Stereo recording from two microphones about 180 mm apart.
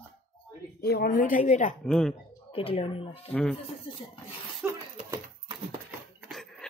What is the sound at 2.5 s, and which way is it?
Speech, 30° left (ahead or behind).